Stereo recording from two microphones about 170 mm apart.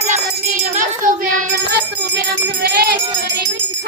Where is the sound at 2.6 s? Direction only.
65° right (ahead or behind).